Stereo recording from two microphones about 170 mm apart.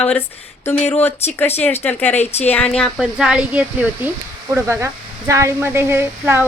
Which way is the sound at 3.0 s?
5° right (ahead or behind).